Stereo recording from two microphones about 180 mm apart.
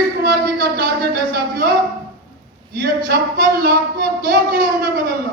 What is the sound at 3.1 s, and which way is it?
A man's voice, 55° right (ahead or behind).